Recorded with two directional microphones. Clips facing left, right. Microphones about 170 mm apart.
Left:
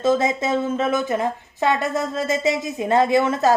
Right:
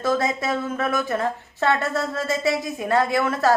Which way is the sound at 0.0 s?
20° left (ahead or behind).